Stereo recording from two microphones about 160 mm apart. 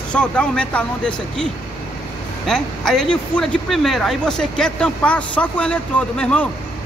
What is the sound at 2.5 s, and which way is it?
A man's voice, 5° left (ahead or behind).